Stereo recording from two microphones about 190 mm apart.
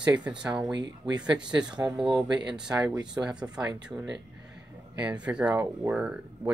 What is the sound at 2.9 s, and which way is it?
Speech, 20° right (ahead or behind).